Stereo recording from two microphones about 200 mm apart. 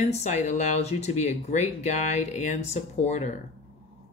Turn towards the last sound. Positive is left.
turn(degrees=35)  # may be behind; listen again after turning